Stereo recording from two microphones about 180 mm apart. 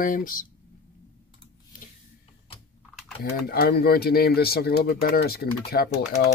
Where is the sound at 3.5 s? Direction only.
60° left (ahead or behind).